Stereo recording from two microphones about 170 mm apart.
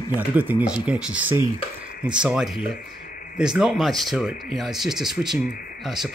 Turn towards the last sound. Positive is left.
turn(degrees=0)  # may be behind; listen again after turning